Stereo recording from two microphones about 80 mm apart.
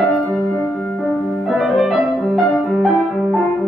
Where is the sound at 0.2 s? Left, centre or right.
Centre.